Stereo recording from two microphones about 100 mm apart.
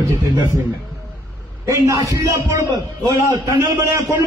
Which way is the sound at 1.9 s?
30° right (ahead or behind).